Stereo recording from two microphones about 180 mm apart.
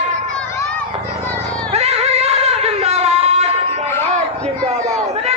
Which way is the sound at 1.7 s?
35° right (ahead or behind).